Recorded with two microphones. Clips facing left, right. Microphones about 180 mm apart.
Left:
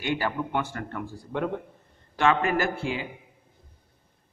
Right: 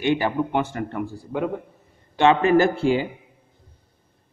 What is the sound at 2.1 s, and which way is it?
Speech, 25° right (ahead or behind).